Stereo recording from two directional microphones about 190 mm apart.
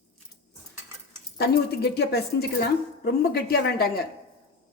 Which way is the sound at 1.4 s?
60° left (ahead or behind).